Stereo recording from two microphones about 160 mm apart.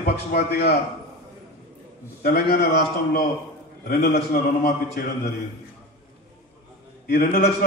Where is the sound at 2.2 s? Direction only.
85° left; by 5.0 s 70° left (ahead or behind).